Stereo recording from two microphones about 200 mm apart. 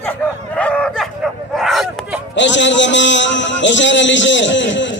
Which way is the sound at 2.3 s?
65° left (ahead or behind).